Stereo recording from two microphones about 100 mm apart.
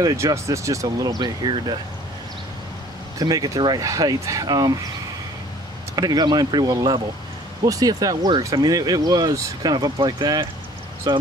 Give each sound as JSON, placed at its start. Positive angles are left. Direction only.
{"t": 0.0, "sound": "speech", "side_deg": -30}
{"t": 3.2, "sound": "speech", "side_deg": -35}
{"t": 5.9, "sound": "speech", "side_deg": -40}